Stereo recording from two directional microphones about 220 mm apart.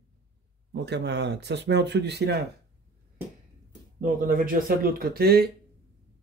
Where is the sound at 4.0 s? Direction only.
35° right (ahead or behind).